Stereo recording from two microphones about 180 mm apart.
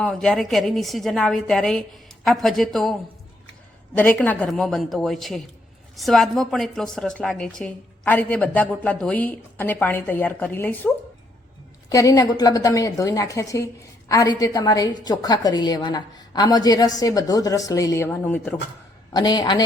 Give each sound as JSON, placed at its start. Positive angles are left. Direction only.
{"t": 0.0, "sound": "a woman's voice", "side_deg": 5}
{"t": 3.9, "sound": "a woman's voice", "side_deg": 10}
{"t": 19.1, "sound": "a woman's voice", "side_deg": 25}